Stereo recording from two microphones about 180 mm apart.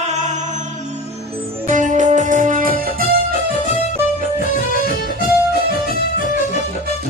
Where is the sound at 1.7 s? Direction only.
45° right (ahead or behind).